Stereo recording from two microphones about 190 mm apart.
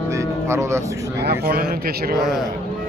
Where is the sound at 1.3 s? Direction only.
50° right (ahead or behind).